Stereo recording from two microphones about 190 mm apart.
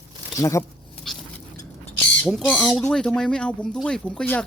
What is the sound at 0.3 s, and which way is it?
Speech, 15° left (ahead or behind).